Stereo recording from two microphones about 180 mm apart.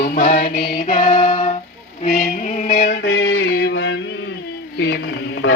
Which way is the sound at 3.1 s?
80° left.